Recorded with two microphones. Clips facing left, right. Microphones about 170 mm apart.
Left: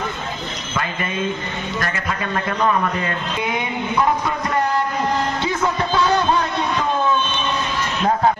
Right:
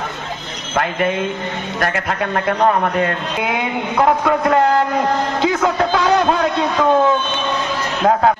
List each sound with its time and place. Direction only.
0.7 s a man's voice: 70° right (ahead or behind)
5.4 s a sound: 80° right
8.0 s speech: 65° right (ahead or behind)